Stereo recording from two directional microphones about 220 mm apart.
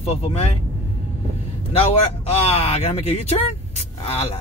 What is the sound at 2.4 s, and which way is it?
Speech, 30° left (ahead or behind).